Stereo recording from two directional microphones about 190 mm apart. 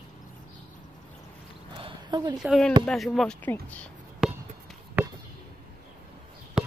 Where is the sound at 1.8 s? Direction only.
25° right (ahead or behind).